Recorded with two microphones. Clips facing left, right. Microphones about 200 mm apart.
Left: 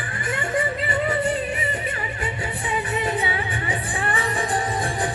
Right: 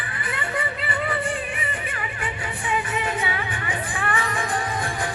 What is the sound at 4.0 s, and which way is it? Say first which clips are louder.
Music: right 1 dB; 35° left (ahead or behind).